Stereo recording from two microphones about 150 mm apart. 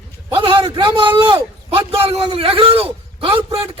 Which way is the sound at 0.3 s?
35° right (ahead or behind).